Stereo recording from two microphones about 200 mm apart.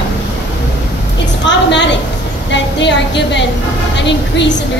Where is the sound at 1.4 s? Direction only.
60° left (ahead or behind).